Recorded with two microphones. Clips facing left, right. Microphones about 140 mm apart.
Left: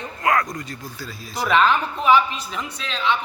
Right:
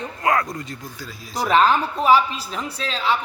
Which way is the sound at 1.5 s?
35° right (ahead or behind).